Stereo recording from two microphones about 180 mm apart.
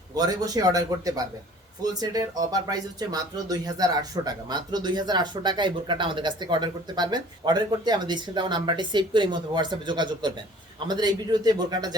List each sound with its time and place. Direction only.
0.1 s speech: 20° right (ahead or behind)